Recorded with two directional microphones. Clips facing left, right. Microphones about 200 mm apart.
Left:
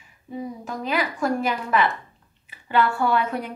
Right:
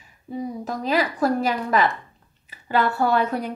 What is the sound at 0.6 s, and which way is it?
A woman's voice, 35° right (ahead or behind).